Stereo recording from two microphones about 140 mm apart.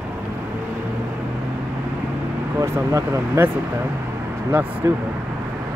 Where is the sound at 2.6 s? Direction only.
20° right (ahead or behind).